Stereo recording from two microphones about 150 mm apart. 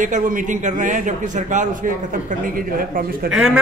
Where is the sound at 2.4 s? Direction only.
70° right (ahead or behind).